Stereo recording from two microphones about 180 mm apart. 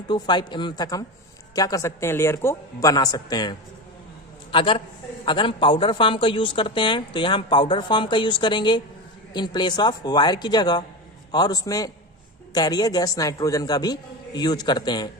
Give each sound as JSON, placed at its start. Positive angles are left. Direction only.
{"t": 0.1, "sound": "a woman's voice", "side_deg": 25}
{"t": 4.5, "sound": "a woman's voice", "side_deg": 30}